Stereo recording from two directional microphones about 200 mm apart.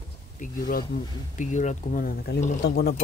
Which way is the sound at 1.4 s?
35° left (ahead or behind).